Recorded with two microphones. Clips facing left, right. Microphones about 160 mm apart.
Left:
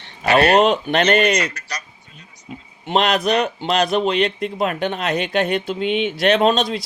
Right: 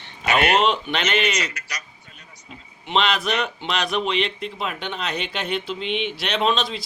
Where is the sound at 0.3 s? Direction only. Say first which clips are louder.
Left 5 dB; 40° left (ahead or behind).